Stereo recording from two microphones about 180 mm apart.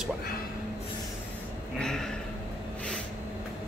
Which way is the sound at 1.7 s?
5° left (ahead or behind).